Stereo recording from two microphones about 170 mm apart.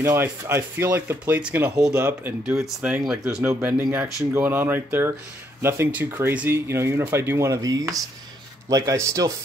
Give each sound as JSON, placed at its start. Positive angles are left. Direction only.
{"t": 0.0, "sound": "speech", "side_deg": -15}